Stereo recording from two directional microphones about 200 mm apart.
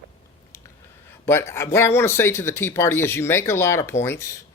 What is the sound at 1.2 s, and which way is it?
Speech, 15° left (ahead or behind).